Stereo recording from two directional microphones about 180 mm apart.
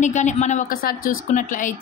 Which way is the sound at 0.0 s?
40° left (ahead or behind).